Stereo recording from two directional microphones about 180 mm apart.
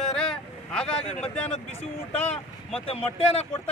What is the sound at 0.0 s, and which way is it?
Vehicle, 5° left (ahead or behind).